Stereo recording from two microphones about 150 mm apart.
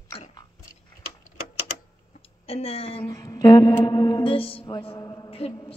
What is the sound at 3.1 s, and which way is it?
Mantra, 25° left (ahead or behind).